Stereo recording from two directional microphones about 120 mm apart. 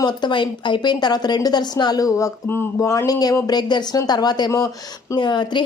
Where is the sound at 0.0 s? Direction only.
40° left (ahead or behind).